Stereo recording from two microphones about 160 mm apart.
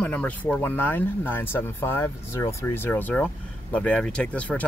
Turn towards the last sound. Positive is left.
turn(degrees=10)  # may be behind; listen again after turning